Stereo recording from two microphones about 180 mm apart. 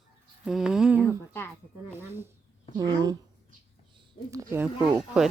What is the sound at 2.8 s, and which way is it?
Speech, 20° right (ahead or behind).